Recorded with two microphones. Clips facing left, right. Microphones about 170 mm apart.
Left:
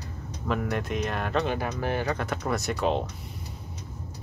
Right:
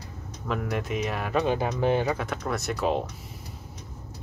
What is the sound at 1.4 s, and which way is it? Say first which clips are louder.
Speech: right 4 dB; 20° right (ahead or behind).